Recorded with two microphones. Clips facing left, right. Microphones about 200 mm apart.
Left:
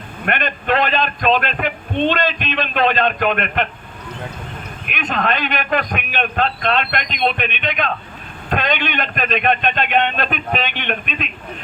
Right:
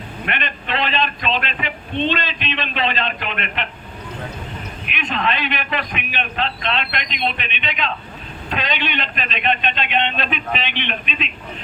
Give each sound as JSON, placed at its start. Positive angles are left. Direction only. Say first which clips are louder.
{"t": 0.3, "sound": "a man's voice", "louder": "left 7 dB", "side_deg": 45}
{"t": 4.9, "sound": "a man's voice", "louder": "left 2 dB", "side_deg": 45}